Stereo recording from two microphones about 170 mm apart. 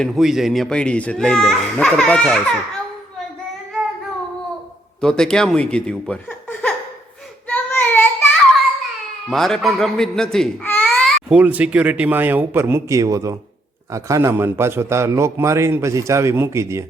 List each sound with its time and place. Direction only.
0.0 s speech: centre (ahead or behind)
4.9 s speech: 5° left (ahead or behind)
7.4 s child singing: 10° left (ahead or behind)
9.3 s speech: centre (ahead or behind)
10.3 s baby cry: 5° left (ahead or behind)
11.3 s a man's voice: 10° right (ahead or behind)